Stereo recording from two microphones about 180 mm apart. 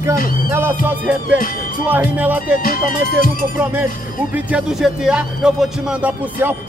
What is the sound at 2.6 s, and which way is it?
Music, 50° left (ahead or behind).